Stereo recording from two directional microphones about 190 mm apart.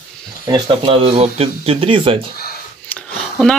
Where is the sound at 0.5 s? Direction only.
25° right (ahead or behind).